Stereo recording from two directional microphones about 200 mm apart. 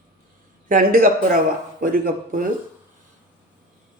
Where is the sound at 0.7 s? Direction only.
45° right (ahead or behind).